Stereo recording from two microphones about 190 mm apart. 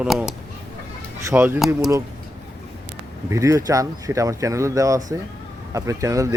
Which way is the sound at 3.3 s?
15° right (ahead or behind).